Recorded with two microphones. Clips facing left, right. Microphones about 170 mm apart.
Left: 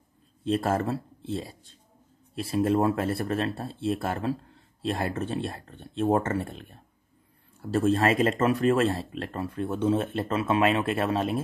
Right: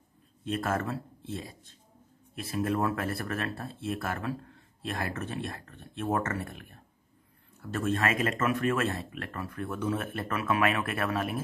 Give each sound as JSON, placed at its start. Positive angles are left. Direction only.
{"t": 0.4, "sound": "speech", "side_deg": 30}